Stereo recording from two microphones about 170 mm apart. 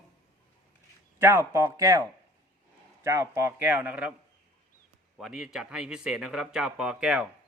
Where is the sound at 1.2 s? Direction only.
15° right (ahead or behind).